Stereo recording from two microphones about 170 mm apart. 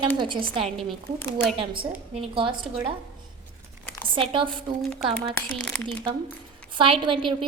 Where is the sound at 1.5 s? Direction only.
30° right (ahead or behind).